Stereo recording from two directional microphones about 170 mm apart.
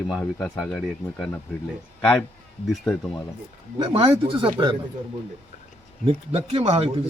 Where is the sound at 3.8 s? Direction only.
30° right (ahead or behind).